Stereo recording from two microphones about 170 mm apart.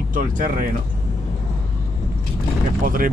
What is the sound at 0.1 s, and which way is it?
Speech, 50° right (ahead or behind).